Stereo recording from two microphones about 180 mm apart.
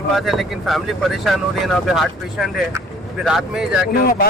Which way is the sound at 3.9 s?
55° left (ahead or behind).